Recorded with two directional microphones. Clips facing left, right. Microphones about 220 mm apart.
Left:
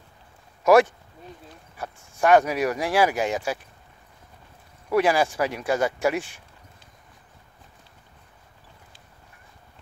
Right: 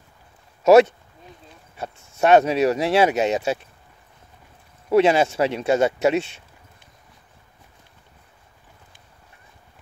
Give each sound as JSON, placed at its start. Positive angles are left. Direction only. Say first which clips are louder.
{"t": 0.7, "sound": "speech", "louder": "right 4 dB", "side_deg": -25}
{"t": 4.8, "sound": "speech", "louder": "right 4 dB", "side_deg": -25}